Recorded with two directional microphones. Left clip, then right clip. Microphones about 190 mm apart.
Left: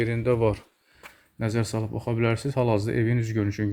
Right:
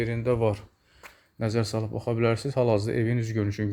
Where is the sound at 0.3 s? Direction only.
Centre (ahead or behind).